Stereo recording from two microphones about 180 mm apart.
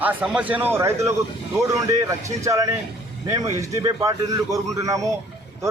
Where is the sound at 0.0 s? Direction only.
10° right (ahead or behind).